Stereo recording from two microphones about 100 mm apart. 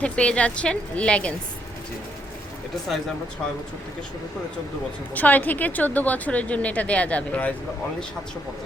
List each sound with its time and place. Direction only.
0.0 s a woman's voice: 10° left (ahead or behind)
5.1 s a woman's voice: 15° left (ahead or behind)